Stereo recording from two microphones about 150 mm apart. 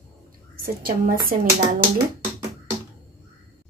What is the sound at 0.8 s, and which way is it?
Speech, 70° right (ahead or behind).